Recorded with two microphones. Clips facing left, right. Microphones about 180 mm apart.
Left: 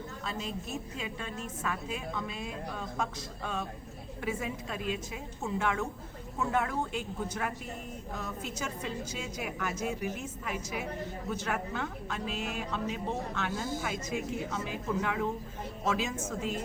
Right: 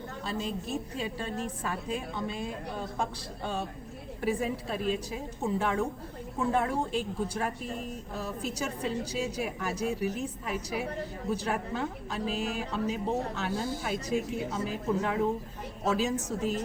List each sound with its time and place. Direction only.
0.3 s a woman's voice: 35° right (ahead or behind)